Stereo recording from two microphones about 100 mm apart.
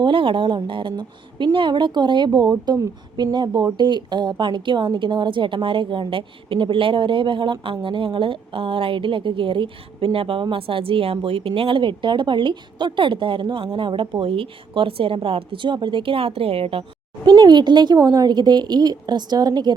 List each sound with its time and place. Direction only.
0.0 s a woman's voice: 60° right (ahead or behind)
17.2 s a woman's voice: 45° right (ahead or behind)
17.9 s a woman's voice: 35° right (ahead or behind)